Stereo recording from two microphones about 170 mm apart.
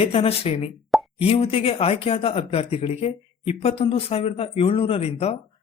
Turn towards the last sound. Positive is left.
turn(degrees=40)  # may be behind; listen again after turning